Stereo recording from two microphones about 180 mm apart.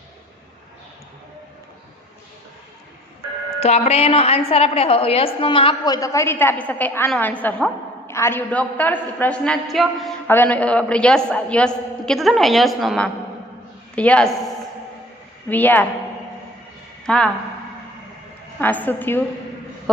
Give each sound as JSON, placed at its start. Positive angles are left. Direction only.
{"t": 3.6, "sound": "a woman's voice", "side_deg": 35}
{"t": 15.4, "sound": "a woman's voice", "side_deg": 10}
{"t": 17.1, "sound": "a man's voice", "side_deg": 5}
{"t": 18.6, "sound": "a woman's voice", "side_deg": 10}